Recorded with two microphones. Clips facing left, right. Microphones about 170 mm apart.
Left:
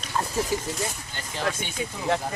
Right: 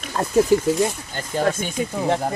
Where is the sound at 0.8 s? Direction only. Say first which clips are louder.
Right 9 dB; 45° right (ahead or behind).